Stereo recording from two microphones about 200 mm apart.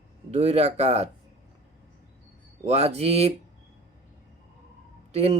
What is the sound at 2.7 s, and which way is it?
Speech, 30° right (ahead or behind).